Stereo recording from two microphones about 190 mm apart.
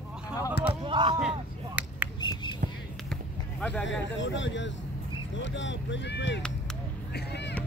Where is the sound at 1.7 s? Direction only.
5° right (ahead or behind).